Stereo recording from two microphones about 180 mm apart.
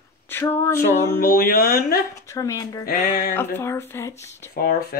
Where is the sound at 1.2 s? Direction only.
55° left (ahead or behind).